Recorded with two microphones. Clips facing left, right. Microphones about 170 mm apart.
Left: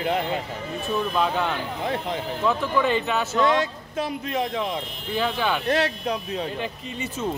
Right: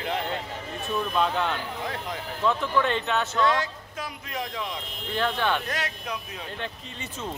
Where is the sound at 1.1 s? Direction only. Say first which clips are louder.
Even; 5° left (ahead or behind).